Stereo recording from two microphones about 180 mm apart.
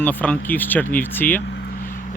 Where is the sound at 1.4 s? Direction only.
65° left (ahead or behind).